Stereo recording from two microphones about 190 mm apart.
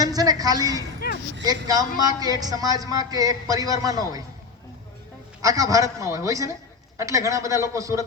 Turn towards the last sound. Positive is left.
turn(degrees=-15)  # may be behind; listen again after turning